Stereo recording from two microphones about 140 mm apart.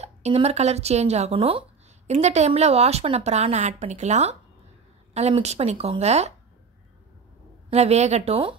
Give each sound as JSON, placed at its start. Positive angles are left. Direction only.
{"t": 0.0, "sound": "a woman's voice", "side_deg": -50}
{"t": 7.7, "sound": "a woman's voice", "side_deg": -50}